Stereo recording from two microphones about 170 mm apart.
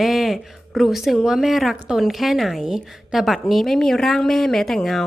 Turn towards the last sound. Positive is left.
turn(degrees=0)  # may be behind; listen again after turning